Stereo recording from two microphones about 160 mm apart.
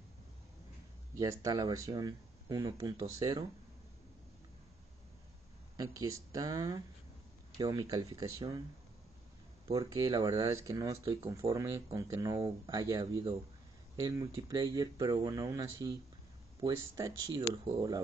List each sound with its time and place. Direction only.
1.1 s speech: 20° right (ahead or behind)
5.8 s speech: 20° right (ahead or behind)
9.7 s speech: 20° right (ahead or behind)
14.3 s speech: 25° right (ahead or behind)